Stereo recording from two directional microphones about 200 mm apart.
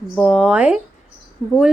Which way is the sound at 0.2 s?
Centre (ahead or behind).